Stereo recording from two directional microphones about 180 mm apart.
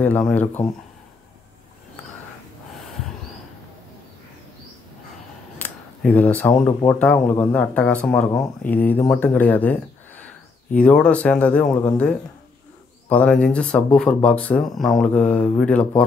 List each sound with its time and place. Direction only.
0.0 s speech: 10° left (ahead or behind)
5.6 s speech: 10° left (ahead or behind)
13.1 s speech: 5° left (ahead or behind)